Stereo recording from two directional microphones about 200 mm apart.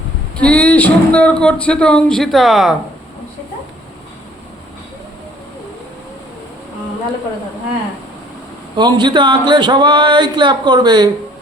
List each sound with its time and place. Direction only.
0.3 s speech: 5° left (ahead or behind)
8.7 s speech: 20° right (ahead or behind)